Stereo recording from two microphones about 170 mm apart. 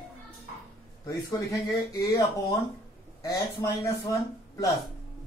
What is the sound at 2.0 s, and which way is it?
Speech, 20° left (ahead or behind).